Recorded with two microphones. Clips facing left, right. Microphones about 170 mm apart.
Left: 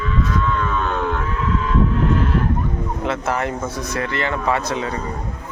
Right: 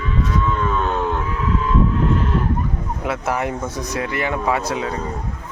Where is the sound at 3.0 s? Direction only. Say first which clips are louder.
Even; 10° right (ahead or behind).